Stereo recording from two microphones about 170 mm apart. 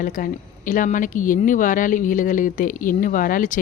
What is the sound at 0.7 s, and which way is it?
Speech, 50° left (ahead or behind).